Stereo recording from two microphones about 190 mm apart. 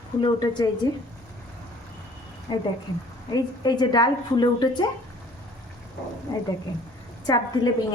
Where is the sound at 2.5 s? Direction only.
25° left (ahead or behind).